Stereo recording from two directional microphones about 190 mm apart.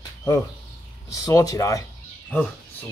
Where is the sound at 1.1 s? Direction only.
15° left (ahead or behind).